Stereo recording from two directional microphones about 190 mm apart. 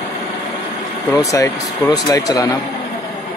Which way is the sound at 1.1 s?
15° left (ahead or behind).